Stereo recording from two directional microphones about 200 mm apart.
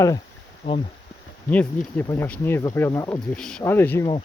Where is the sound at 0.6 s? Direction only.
25° left (ahead or behind).